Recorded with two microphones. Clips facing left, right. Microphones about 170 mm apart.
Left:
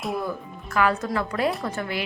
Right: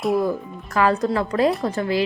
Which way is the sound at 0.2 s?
35° right (ahead or behind).